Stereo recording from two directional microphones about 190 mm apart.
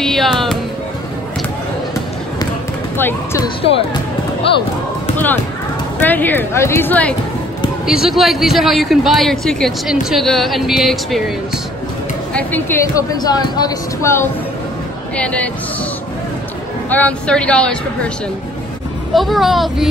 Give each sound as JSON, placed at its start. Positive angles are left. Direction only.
{"t": 0.0, "sound": "music", "side_deg": 0}
{"t": 3.0, "sound": "speech", "side_deg": 10}
{"t": 4.4, "sound": "speech", "side_deg": 30}
{"t": 5.9, "sound": "speech", "side_deg": 10}
{"t": 7.8, "sound": "a man's voice", "side_deg": 0}
{"t": 12.4, "sound": "speech", "side_deg": 10}
{"t": 15.1, "sound": "speech", "side_deg": 5}
{"t": 16.9, "sound": "a man's voice", "side_deg": 5}
{"t": 19.1, "sound": "a man's voice", "side_deg": 0}